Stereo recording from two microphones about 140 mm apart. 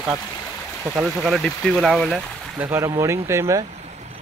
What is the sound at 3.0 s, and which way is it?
Speech, 20° right (ahead or behind).